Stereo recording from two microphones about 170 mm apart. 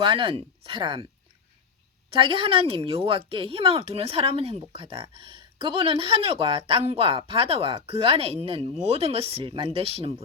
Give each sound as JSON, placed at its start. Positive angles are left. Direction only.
{"t": 0.0, "sound": "speech", "side_deg": -30}
{"t": 2.1, "sound": "speech", "side_deg": -30}